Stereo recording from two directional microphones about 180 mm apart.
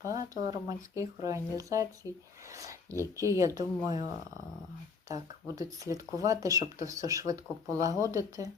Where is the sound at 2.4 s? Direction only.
20° right (ahead or behind).